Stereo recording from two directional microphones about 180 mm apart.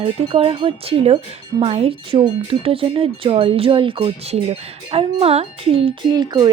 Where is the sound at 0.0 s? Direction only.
30° right (ahead or behind).